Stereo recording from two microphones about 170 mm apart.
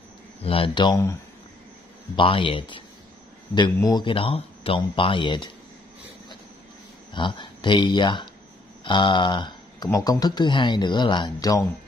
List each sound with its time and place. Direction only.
0.4 s speech: 35° left (ahead or behind)
2.1 s speech: 30° left (ahead or behind)
7.2 s speech: 25° left (ahead or behind)